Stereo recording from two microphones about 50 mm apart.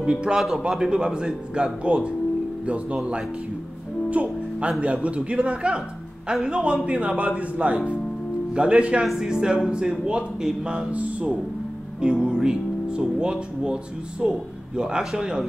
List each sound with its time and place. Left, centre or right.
0.0 s speech: right
4.1 s speech: right
9.0 s speech: centre
10.9 s speech: right